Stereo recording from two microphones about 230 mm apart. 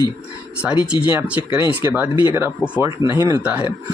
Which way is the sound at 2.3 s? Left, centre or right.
Centre.